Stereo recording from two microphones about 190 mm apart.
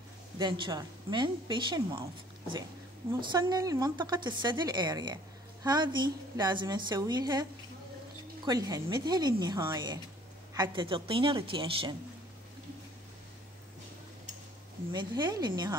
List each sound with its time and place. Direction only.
0.4 s speech: 20° right (ahead or behind)
3.2 s speech: 20° right (ahead or behind)
8.5 s speech: 20° right (ahead or behind)
14.9 s speech: 20° right (ahead or behind)